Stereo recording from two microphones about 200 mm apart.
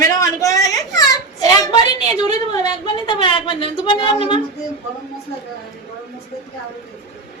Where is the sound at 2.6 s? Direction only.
25° left (ahead or behind).